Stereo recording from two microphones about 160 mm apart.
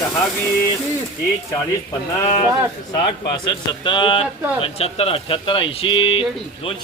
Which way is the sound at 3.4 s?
30° left (ahead or behind).